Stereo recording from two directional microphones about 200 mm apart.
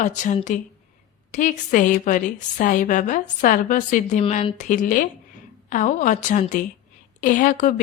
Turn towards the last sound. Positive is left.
turn(degrees=40)  # may be behind; listen again after turning